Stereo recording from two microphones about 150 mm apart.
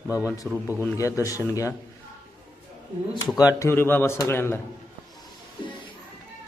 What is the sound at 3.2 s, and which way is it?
Speech, 25° left (ahead or behind).